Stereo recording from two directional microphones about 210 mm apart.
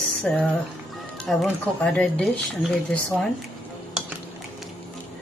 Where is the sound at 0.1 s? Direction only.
5° left (ahead or behind).